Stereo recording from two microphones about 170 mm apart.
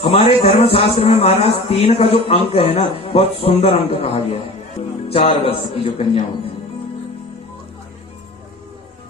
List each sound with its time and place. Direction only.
0.0 s speech: 35° left (ahead or behind)